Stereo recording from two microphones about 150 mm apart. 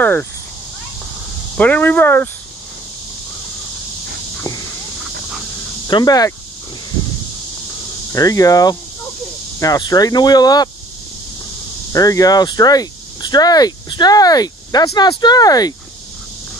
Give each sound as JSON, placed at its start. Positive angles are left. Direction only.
{"t": 0.0, "sound": "speech", "side_deg": 10}
{"t": 1.6, "sound": "speech", "side_deg": 10}
{"t": 5.9, "sound": "speech", "side_deg": 30}
{"t": 8.1, "sound": "speech", "side_deg": 25}
{"t": 11.9, "sound": "speech", "side_deg": 25}